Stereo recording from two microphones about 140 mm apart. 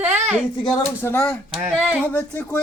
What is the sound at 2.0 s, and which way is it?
Speech, 15° left (ahead or behind).